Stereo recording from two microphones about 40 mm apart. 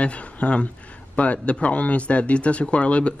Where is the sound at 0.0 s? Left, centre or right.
Left.